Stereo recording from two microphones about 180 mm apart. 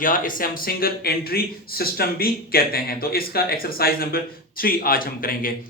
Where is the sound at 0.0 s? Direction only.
50° left (ahead or behind).